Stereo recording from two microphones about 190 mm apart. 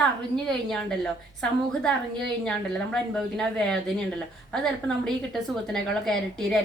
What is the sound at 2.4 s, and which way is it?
A woman's voice, 5° left (ahead or behind).